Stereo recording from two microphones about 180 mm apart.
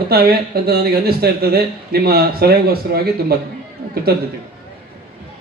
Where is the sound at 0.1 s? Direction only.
60° right (ahead or behind).